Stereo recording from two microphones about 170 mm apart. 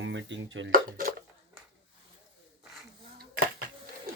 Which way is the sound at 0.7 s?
55° right (ahead or behind).